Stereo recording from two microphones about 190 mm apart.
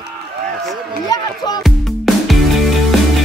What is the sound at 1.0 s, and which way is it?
Speech, 20° left (ahead or behind).